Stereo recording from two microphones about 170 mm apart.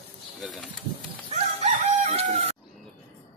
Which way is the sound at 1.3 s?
40° right (ahead or behind).